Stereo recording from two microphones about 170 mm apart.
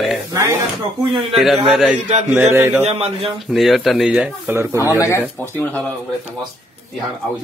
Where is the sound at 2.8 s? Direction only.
35° right (ahead or behind).